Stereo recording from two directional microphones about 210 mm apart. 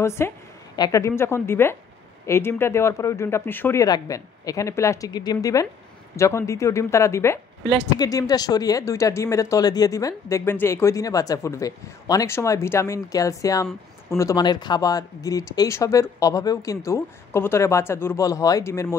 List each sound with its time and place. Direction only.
0.0 s a woman's voice: 10° left (ahead or behind)